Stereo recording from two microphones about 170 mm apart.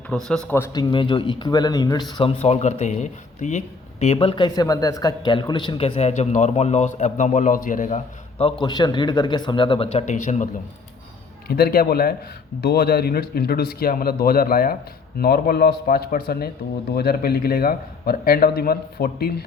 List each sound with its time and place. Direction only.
0.1 s speech: 5° left (ahead or behind)
0.5 s speech: 20° left (ahead or behind); by 8.5 s 40° left (ahead or behind)
8.6 s speech: 25° left (ahead or behind); by 10.5 s 45° left (ahead or behind)
11.4 s a man's voice: 65° left (ahead or behind)